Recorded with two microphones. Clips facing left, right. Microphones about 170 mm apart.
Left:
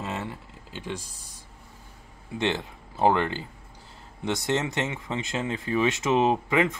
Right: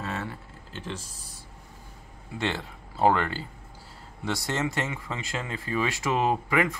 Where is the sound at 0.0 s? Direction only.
20° left (ahead or behind).